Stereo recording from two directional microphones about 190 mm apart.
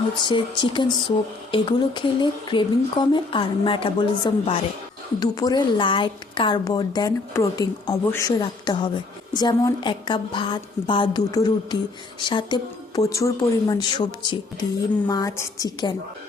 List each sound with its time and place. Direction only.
0.2 s speech: 25° left (ahead or behind)